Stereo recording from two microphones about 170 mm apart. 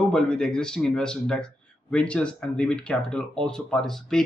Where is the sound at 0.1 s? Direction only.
5° left (ahead or behind).